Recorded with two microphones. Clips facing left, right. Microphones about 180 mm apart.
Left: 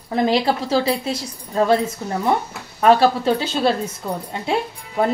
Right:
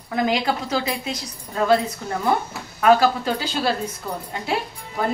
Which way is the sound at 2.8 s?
30° left (ahead or behind).